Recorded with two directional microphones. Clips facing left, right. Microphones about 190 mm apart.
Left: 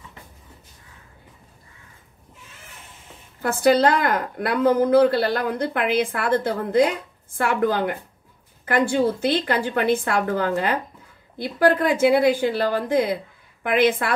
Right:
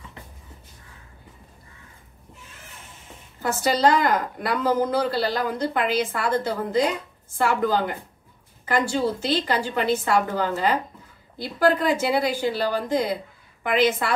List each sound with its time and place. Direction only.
3.6 s speech: 55° left (ahead or behind)